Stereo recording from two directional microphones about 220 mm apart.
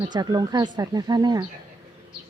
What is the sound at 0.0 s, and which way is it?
Speech, 20° right (ahead or behind).